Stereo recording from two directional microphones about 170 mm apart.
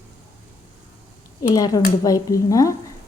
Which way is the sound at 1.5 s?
20° left (ahead or behind).